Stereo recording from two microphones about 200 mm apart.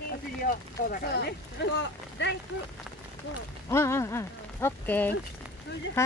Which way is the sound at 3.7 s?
15° left (ahead or behind).